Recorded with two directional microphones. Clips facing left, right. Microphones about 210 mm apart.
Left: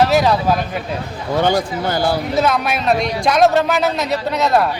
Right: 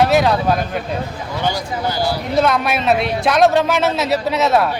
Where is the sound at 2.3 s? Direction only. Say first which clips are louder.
Right 1 dB; centre (ahead or behind).